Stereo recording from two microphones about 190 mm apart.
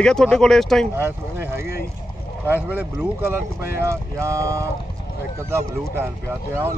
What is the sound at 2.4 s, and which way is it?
Speech, 10° right (ahead or behind).